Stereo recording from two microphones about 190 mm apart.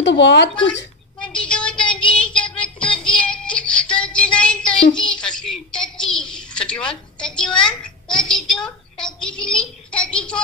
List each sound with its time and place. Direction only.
0.0 s speech: 65° left (ahead or behind)
1.2 s child singing: 5° left (ahead or behind)
4.9 s a sound: 5° left (ahead or behind)